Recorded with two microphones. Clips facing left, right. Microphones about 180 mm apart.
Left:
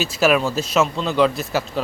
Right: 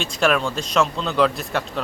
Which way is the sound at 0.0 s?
5° left (ahead or behind).